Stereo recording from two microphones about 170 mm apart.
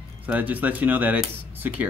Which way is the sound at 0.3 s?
10° right (ahead or behind).